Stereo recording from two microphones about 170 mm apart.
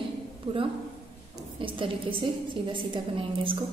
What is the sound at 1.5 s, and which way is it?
A woman's voice, 30° right (ahead or behind).